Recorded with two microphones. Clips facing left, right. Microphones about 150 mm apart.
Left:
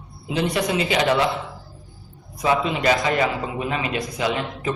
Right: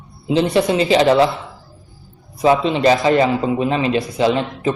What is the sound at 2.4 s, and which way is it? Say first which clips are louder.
A man's voice: right 6 dB; 30° right (ahead or behind).